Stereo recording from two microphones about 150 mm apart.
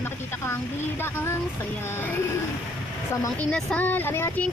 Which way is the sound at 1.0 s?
15° left (ahead or behind).